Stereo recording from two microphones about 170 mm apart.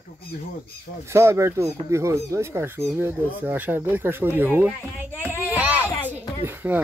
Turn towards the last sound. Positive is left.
turn(degrees=-10)  # may be behind; listen again after turning